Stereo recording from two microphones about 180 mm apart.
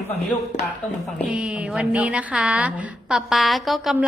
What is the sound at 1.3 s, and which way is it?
A woman's voice, 5° right (ahead or behind).